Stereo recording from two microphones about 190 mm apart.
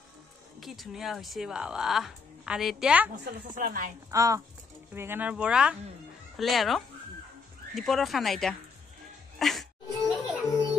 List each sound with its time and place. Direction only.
0.6 s speech: centre (ahead or behind)
3.5 s speech: 45° right (ahead or behind)
4.1 s speech: 15° right (ahead or behind); by 8.5 s centre (ahead or behind)
9.4 s music: centre (ahead or behind)